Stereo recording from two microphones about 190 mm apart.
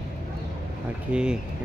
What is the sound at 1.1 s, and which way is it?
Speech, 5° right (ahead or behind).